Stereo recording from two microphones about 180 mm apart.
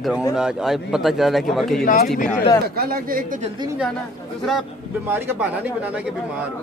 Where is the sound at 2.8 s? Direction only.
55° right (ahead or behind).